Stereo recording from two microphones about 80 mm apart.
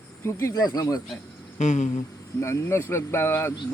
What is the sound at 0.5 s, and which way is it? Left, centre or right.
Speech, left.